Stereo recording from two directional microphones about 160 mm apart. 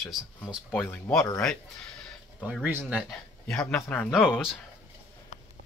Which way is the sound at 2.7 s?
10° right (ahead or behind).